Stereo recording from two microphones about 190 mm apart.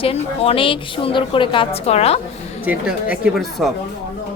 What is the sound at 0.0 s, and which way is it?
A woman's voice, 30° left (ahead or behind).